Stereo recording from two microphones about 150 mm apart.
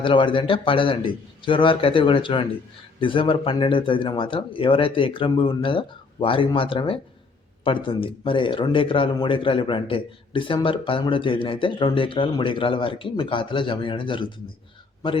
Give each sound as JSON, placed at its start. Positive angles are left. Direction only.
{"t": 0.0, "sound": "speech", "side_deg": 35}